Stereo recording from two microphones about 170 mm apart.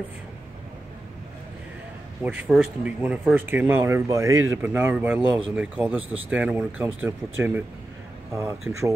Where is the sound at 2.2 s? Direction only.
5° right (ahead or behind).